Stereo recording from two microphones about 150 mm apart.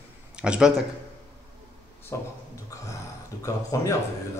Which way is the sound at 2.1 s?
15° left (ahead or behind).